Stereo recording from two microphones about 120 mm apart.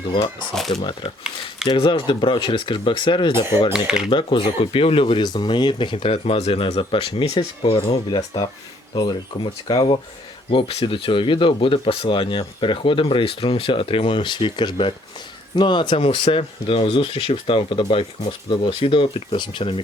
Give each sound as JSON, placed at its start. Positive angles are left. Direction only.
{"t": 0.7, "sound": "speech", "side_deg": 40}
{"t": 9.0, "sound": "speech", "side_deg": 40}